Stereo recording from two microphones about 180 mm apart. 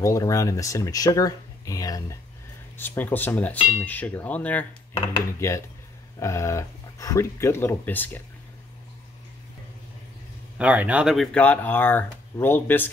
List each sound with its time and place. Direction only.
0.0 s speech: 20° left (ahead or behind)
10.6 s speech: 10° right (ahead or behind); by 12.9 s 10° left (ahead or behind)